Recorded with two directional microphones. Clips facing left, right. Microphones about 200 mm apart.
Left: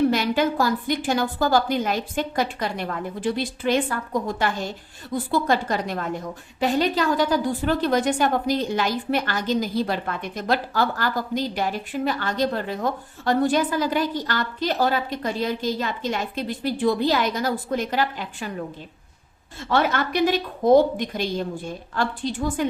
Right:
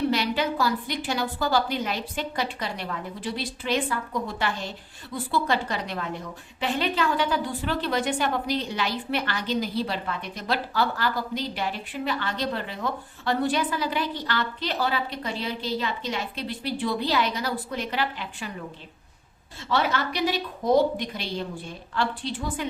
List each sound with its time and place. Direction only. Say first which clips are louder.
0.1 s a woman's voice: left 4 dB; 45° left (ahead or behind)
19.6 s a woman's voice: left 3 dB; 50° left (ahead or behind)